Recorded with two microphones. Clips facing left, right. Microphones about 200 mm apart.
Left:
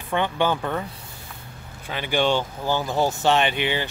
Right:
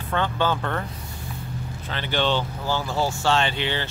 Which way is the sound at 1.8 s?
10° left (ahead or behind).